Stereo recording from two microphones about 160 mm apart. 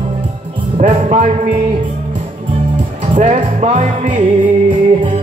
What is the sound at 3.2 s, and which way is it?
Music, 45° right (ahead or behind).